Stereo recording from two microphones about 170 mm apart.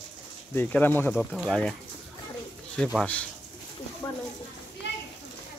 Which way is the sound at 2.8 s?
5° left (ahead or behind).